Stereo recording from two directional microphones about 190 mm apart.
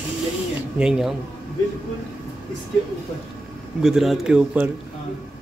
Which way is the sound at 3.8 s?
Centre (ahead or behind).